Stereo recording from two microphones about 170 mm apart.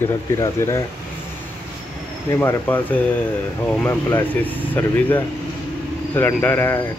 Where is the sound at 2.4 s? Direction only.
10° left (ahead or behind).